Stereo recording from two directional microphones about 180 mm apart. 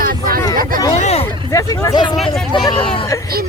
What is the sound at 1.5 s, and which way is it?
Hubbub, 20° left (ahead or behind).